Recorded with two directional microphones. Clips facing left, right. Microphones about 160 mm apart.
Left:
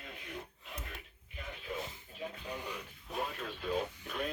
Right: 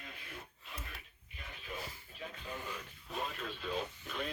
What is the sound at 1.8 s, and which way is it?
Radio, 20° left (ahead or behind).